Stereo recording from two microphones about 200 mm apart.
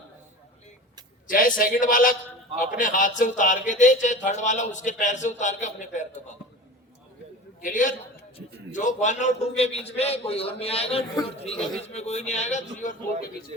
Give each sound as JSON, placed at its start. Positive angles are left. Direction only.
{"t": 1.3, "sound": "a man's voice", "side_deg": 45}
{"t": 7.6, "sound": "a man's voice", "side_deg": 40}